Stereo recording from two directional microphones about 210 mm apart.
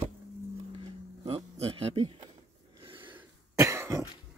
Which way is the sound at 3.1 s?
15° right (ahead or behind).